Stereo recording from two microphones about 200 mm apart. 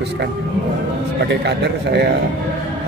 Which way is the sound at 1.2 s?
60° right (ahead or behind).